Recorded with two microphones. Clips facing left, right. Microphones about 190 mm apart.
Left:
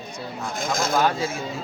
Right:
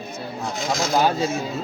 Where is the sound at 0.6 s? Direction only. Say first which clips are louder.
Even; 50° left (ahead or behind).